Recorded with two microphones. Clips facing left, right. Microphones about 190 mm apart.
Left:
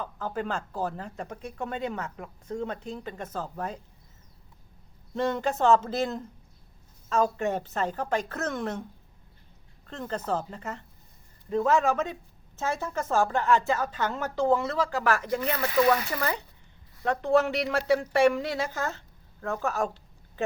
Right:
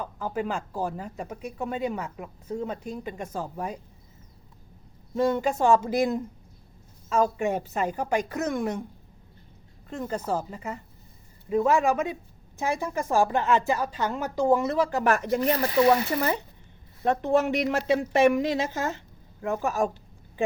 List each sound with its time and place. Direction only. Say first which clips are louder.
0.0 s speech: right 2 dB; 10° right (ahead or behind)
5.1 s speech: right 3 dB; 5° right (ahead or behind)
9.8 s a woman's voice: right 2 dB; 10° right (ahead or behind)